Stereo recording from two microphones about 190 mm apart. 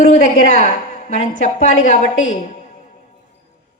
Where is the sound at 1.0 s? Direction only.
35° left (ahead or behind).